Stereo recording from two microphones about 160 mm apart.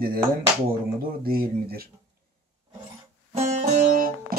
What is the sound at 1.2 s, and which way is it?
Speech, 70° right (ahead or behind).